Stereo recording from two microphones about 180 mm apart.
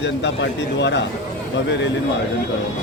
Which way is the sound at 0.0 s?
80° left.